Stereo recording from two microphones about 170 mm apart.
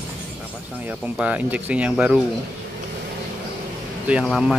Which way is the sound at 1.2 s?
10° right (ahead or behind).